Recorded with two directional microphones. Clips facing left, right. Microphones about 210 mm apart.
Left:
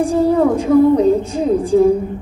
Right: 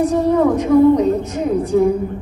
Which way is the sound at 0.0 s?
30° left (ahead or behind).